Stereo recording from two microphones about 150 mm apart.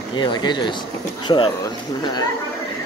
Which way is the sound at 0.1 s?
30° left (ahead or behind).